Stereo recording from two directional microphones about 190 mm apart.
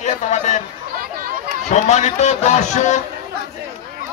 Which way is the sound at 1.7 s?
40° left (ahead or behind).